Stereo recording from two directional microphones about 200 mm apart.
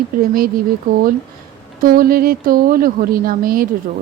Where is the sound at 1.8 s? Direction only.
45° right (ahead or behind).